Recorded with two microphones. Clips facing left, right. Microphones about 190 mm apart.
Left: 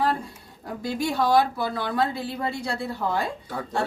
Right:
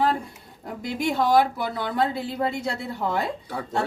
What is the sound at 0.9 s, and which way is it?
A woman's voice, 20° right (ahead or behind).